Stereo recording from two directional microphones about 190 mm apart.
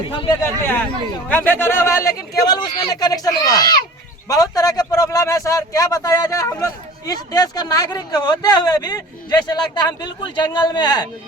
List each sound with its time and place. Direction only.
0.1 s speech: 25° left (ahead or behind)
0.4 s speech: 10° left (ahead or behind)